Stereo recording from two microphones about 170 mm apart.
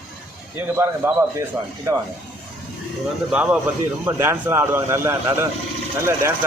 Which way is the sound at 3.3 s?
10° right (ahead or behind).